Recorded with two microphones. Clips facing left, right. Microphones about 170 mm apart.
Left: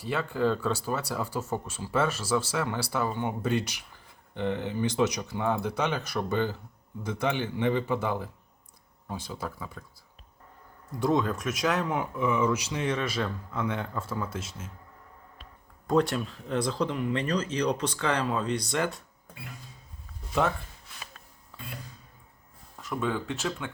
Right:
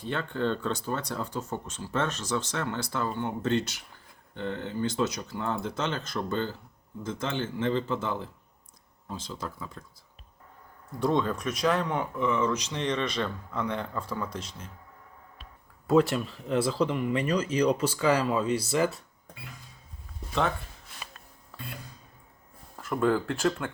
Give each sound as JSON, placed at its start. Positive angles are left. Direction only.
{"t": 0.0, "sound": "speech", "side_deg": 5}
{"t": 11.0, "sound": "speech", "side_deg": 0}
{"t": 15.9, "sound": "speech", "side_deg": -5}
{"t": 23.0, "sound": "speech", "side_deg": 0}